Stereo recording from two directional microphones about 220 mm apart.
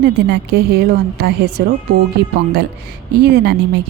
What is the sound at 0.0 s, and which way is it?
A woman's voice, 50° right (ahead or behind).